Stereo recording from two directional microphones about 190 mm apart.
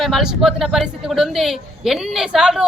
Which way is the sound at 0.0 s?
Centre (ahead or behind).